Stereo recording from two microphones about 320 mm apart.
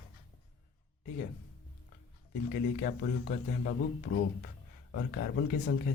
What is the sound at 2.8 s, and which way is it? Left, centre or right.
Speech, left.